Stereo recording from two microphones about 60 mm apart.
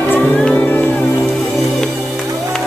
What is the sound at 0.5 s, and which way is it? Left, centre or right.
Music, left.